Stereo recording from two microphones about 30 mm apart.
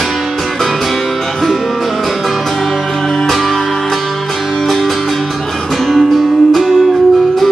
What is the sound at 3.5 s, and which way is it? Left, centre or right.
Music, centre.